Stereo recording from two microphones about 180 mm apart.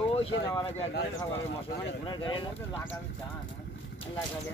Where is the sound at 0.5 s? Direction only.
30° left (ahead or behind).